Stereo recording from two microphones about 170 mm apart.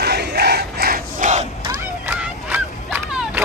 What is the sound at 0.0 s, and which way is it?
Crowd, 75° right (ahead or behind).